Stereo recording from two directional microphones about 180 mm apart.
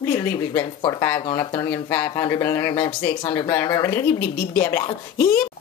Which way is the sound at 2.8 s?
30° left (ahead or behind).